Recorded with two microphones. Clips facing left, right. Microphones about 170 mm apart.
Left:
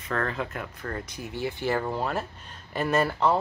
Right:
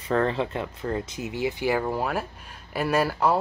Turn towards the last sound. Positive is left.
turn(degrees=-5)  # may be behind; listen again after turning